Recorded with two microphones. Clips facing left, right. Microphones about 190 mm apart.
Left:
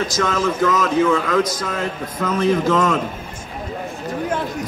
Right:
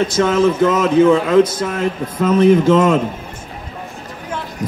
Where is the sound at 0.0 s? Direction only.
30° right (ahead or behind).